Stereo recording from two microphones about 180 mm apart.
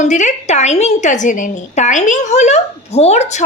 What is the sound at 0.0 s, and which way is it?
A woman's voice, 40° left (ahead or behind).